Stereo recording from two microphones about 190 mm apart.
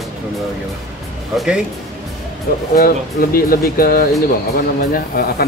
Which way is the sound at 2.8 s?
50° left (ahead or behind).